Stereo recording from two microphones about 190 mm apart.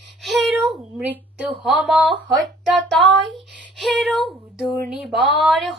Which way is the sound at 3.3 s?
Centre (ahead or behind).